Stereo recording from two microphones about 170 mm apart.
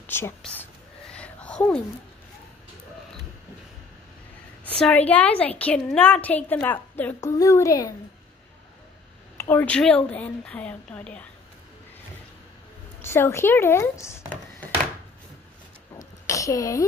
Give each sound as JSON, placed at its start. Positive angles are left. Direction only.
{"t": 0.0, "sound": "speech", "side_deg": 10}
{"t": 1.1, "sound": "a sound", "side_deg": 5}
{"t": 4.7, "sound": "a woman's voice", "side_deg": 5}
{"t": 9.4, "sound": "a woman's voice", "side_deg": 10}
{"t": 13.0, "sound": "a woman's voice", "side_deg": 15}
{"t": 16.3, "sound": "a woman's voice", "side_deg": 20}